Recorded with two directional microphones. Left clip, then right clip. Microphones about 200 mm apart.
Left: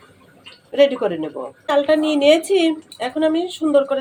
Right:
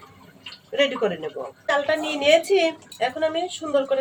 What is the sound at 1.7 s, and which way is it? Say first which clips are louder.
Speech: left 6 dB; 30° left (ahead or behind).